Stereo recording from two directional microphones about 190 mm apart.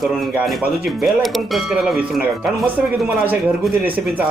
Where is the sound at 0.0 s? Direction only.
Centre (ahead or behind).